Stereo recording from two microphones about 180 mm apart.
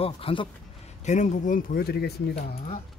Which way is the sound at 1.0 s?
40° left (ahead or behind).